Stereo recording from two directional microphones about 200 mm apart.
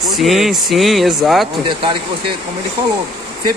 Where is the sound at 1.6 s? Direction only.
25° right (ahead or behind).